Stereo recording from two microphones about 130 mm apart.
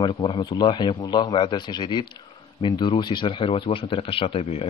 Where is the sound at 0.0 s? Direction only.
40° left (ahead or behind).